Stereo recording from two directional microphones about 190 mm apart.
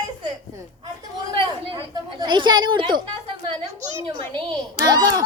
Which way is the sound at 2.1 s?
25° right (ahead or behind).